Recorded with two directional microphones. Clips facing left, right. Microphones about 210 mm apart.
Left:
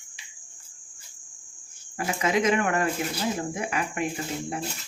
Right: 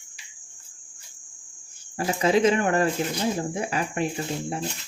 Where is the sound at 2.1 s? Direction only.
30° right (ahead or behind).